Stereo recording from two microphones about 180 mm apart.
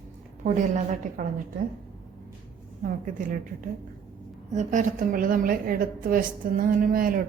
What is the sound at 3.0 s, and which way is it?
Speech, 50° right (ahead or behind).